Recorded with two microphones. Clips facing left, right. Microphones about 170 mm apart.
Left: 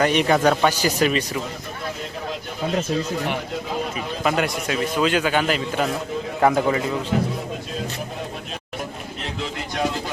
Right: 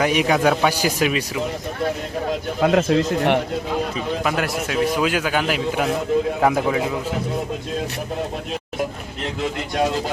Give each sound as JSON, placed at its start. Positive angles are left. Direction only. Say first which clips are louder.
{"t": 0.0, "sound": "a man's voice", "louder": "even", "side_deg": -5}
{"t": 2.6, "sound": "speech", "louder": "right 6 dB", "side_deg": -80}
{"t": 4.2, "sound": "a man's voice", "louder": "left 4 dB", "side_deg": 0}